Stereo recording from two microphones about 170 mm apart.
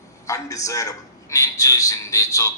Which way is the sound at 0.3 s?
20° left (ahead or behind).